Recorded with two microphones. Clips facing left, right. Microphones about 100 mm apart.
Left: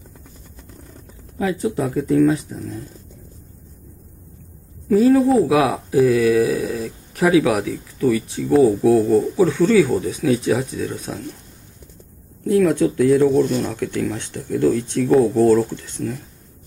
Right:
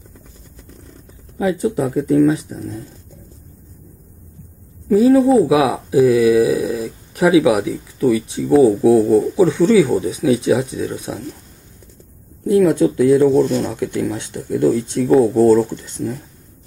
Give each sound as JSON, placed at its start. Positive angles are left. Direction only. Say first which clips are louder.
{"t": 1.4, "sound": "speech", "louder": "right 3 dB", "side_deg": -15}
{"t": 4.8, "sound": "speech", "louder": "right 2 dB", "side_deg": -10}
{"t": 9.0, "sound": "speech", "louder": "right 2 dB", "side_deg": -5}
{"t": 9.4, "sound": "speech", "louder": "right 2 dB", "side_deg": -15}
{"t": 12.4, "sound": "speech", "louder": "right 3 dB", "side_deg": -10}